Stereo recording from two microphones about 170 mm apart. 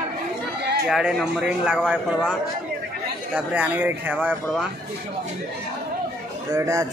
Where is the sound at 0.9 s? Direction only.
Centre (ahead or behind).